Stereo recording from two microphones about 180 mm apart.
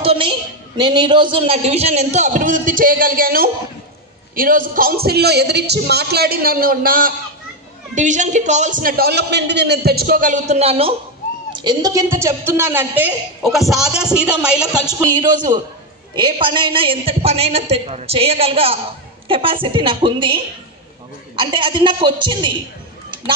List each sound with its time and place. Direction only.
0.0 s a woman's voice: 30° right (ahead or behind)
11.5 s a woman's voice: 25° right (ahead or behind); by 14.7 s 5° right (ahead or behind)
15.0 s a woman's voice: 20° right (ahead or behind)